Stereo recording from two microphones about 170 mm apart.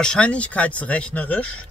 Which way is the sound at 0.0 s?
5° left (ahead or behind).